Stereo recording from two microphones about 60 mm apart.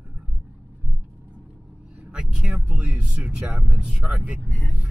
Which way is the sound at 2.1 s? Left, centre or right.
Centre.